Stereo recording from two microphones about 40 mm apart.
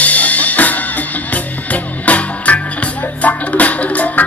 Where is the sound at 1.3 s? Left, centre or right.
Left.